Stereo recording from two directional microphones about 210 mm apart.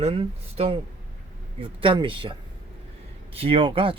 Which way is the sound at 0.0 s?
25° right (ahead or behind).